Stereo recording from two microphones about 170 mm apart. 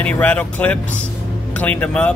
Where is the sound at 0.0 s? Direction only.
10° left (ahead or behind).